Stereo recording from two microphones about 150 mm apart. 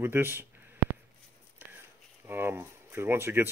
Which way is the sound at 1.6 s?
15° right (ahead or behind).